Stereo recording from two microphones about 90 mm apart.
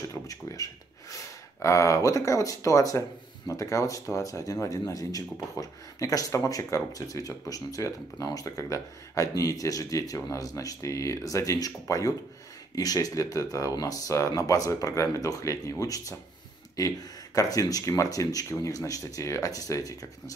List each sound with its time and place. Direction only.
0.1 s speech: 35° left (ahead or behind)